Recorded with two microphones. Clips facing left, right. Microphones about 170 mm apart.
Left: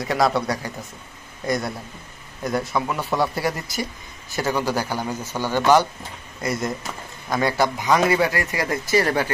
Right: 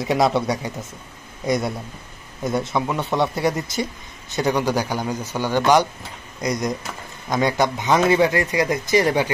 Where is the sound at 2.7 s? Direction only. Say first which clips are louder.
Right 2 dB; 20° right (ahead or behind).